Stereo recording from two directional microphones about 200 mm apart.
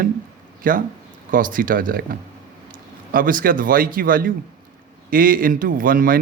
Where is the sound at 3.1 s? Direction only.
45° right (ahead or behind).